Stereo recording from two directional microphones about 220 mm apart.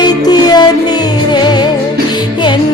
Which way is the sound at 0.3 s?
20° left (ahead or behind).